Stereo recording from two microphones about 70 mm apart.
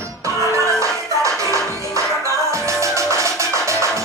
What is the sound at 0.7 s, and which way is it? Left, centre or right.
Music, right.